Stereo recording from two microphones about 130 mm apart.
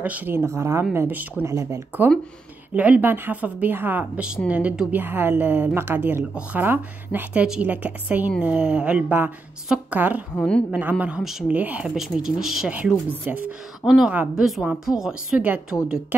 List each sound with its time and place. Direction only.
0.0 s speech: 10° right (ahead or behind)
2.7 s speech: 10° right (ahead or behind)
10.3 s a woman's voice: 5° left (ahead or behind)
10.7 s speech: 10° right (ahead or behind)
13.1 s a woman's voice: 15° right (ahead or behind)